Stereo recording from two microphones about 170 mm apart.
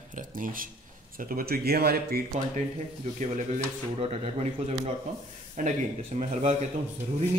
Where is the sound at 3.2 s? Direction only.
45° right (ahead or behind).